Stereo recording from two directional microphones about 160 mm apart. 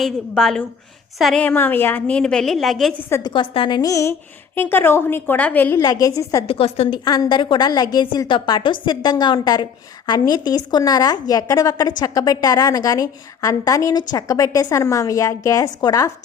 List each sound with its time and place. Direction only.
0.0 s a woman's voice: centre (ahead or behind)
3.2 s a woman's voice: 30° left (ahead or behind); by 5.8 s 10° left (ahead or behind)
5.8 s a woman's voice: 25° left (ahead or behind)
6.5 s a woman's voice: 40° left (ahead or behind)
7.0 s a woman's voice: 25° left (ahead or behind)